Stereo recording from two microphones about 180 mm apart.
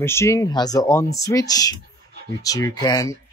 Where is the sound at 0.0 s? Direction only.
15° left (ahead or behind).